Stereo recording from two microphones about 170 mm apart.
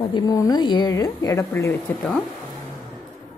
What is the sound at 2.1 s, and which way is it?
Speech, centre (ahead or behind).